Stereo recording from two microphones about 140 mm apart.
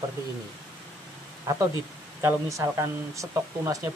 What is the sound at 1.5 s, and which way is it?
Speech, 20° right (ahead or behind).